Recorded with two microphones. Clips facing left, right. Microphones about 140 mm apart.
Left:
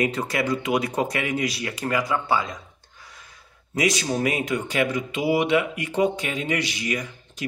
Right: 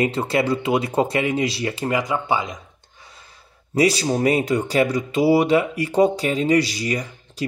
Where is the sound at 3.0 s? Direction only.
25° right (ahead or behind).